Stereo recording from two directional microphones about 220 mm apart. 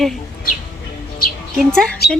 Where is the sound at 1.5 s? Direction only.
5° left (ahead or behind).